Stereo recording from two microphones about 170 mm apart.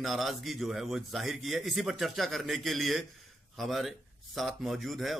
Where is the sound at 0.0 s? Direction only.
Centre (ahead or behind).